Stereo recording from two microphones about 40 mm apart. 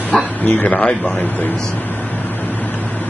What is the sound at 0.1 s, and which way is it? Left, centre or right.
Speech, left.